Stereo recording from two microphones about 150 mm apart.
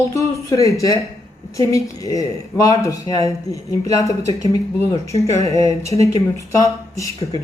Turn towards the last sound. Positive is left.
turn(degrees=20)  # may be behind; listen again after turning